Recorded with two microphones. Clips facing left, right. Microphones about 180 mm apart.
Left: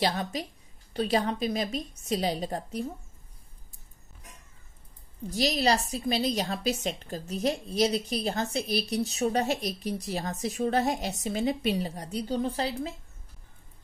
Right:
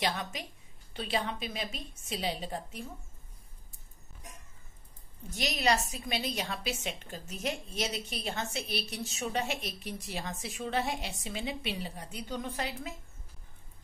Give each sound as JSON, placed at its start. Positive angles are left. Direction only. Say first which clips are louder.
{"t": 0.0, "sound": "a woman's voice", "louder": "left 5 dB", "side_deg": 35}
{"t": 5.3, "sound": "a woman's voice", "louder": "left 4 dB", "side_deg": 35}